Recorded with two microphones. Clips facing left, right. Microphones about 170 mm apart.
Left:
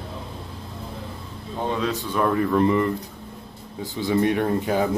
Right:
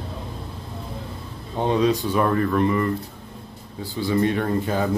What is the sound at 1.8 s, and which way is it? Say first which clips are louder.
Speech: right 6 dB; 15° right (ahead or behind).